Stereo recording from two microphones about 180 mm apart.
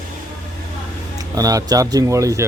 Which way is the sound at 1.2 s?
20° right (ahead or behind).